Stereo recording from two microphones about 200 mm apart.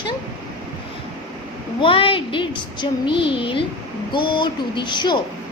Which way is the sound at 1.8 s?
25° left (ahead or behind).